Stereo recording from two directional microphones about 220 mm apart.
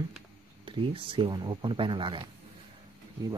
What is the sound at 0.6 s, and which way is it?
Speech, 25° right (ahead or behind).